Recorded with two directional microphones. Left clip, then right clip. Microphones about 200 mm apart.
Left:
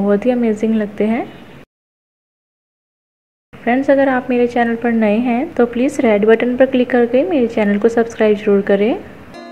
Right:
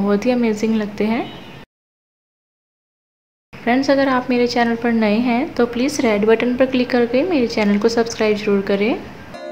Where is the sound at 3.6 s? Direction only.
5° left (ahead or behind).